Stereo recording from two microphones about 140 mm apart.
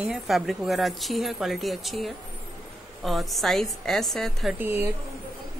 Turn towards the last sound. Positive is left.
turn(degrees=-15)  # may be behind; listen again after turning